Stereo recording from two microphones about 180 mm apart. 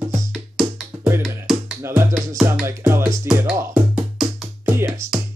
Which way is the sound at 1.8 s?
15° right (ahead or behind).